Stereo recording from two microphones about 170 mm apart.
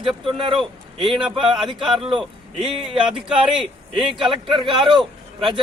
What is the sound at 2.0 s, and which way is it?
Speech, 30° right (ahead or behind).